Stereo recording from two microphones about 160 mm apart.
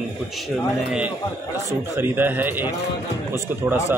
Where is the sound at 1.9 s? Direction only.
10° right (ahead or behind).